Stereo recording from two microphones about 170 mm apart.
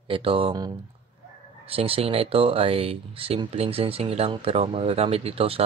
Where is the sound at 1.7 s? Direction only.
35° right (ahead or behind).